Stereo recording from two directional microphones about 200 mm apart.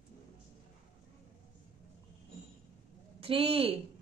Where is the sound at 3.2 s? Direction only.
30° right (ahead or behind).